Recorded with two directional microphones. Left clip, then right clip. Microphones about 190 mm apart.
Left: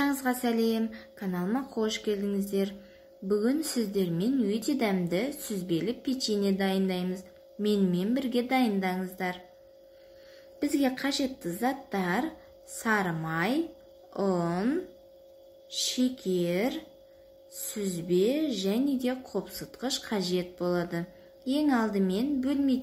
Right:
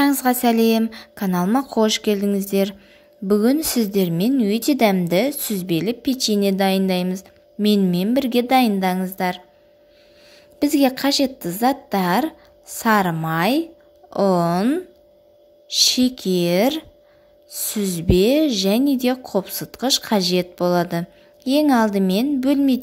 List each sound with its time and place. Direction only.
0.0 s a woman's voice: 45° right (ahead or behind)
10.6 s a woman's voice: 45° right (ahead or behind)